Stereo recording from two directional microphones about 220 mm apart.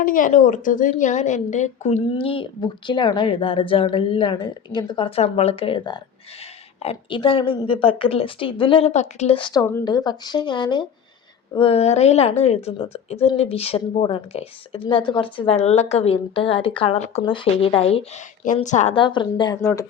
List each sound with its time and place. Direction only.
0.0 s speech: 40° left (ahead or behind); by 19.8 s 15° left (ahead or behind)